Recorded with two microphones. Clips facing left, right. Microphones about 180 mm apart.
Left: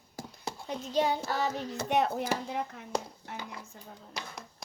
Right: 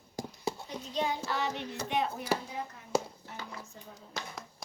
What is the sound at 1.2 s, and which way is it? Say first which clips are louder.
Child singing: left 2 dB; 40° left (ahead or behind).